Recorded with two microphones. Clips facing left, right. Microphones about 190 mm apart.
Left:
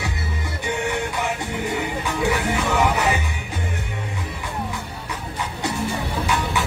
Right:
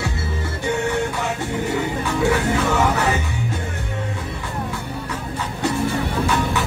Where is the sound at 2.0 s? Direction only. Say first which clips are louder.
Right 3 dB; 15° left (ahead or behind).